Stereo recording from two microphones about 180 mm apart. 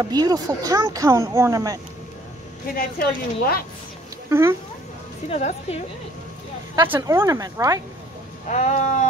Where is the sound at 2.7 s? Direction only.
55° left (ahead or behind).